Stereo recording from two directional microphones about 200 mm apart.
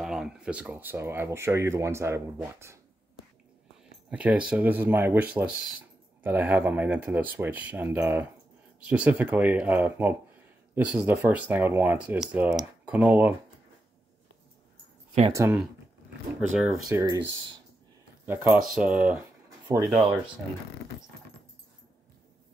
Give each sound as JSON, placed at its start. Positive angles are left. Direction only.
{"t": 0.0, "sound": "speech", "side_deg": 0}
{"t": 4.1, "sound": "speech", "side_deg": -5}
{"t": 15.3, "sound": "speech", "side_deg": -15}
{"t": 17.0, "sound": "speech", "side_deg": -20}
{"t": 19.7, "sound": "speech", "side_deg": -15}